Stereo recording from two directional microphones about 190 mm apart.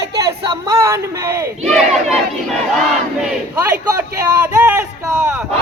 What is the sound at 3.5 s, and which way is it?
A man's voice, 15° right (ahead or behind).